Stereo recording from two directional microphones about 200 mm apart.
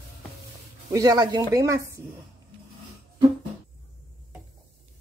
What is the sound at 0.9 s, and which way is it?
Speech, 20° right (ahead or behind).